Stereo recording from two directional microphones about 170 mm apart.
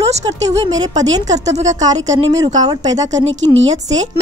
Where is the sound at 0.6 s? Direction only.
25° right (ahead or behind).